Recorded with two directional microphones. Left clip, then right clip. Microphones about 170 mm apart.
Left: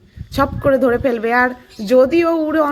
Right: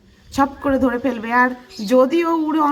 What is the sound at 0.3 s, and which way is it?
A woman's voice, 20° left (ahead or behind).